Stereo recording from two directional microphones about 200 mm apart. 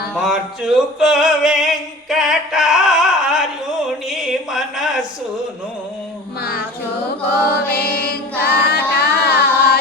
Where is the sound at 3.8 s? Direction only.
Centre (ahead or behind).